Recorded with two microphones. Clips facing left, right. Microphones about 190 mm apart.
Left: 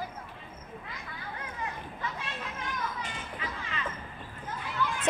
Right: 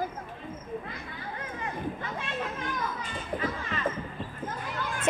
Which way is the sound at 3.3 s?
40° right (ahead or behind).